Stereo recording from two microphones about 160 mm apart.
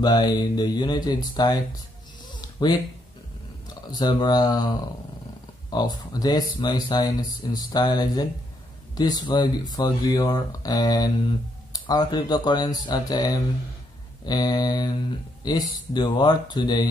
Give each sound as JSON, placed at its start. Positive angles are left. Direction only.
{"t": 0.0, "sound": "speech", "side_deg": 25}
{"t": 3.9, "sound": "speech", "side_deg": 25}